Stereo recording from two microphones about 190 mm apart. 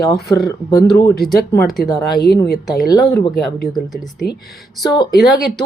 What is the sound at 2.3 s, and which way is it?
Speech, 55° left (ahead or behind).